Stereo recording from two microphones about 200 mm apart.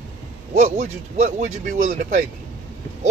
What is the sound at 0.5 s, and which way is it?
Speech, 35° right (ahead or behind).